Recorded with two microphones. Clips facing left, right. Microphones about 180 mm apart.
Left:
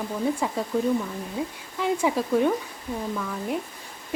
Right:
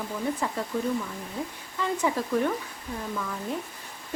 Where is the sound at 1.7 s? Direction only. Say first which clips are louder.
Left 3 dB; 15° left (ahead or behind).